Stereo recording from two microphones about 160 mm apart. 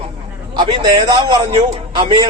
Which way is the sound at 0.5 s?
25° right (ahead or behind).